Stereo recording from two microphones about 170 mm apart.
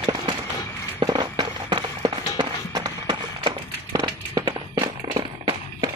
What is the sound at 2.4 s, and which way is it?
Run, 25° right (ahead or behind).